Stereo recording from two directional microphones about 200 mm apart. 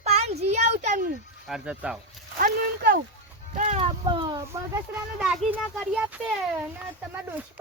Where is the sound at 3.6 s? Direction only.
35° right (ahead or behind); by 4.7 s 15° right (ahead or behind).